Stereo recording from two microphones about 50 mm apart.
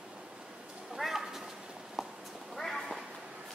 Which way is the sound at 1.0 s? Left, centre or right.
Centre.